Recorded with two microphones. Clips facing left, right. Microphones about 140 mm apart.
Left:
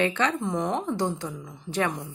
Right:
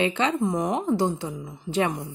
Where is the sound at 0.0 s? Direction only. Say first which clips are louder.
Right 2 dB; 15° right (ahead or behind).